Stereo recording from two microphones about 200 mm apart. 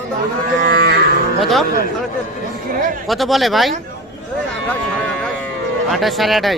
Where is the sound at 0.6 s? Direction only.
50° right (ahead or behind).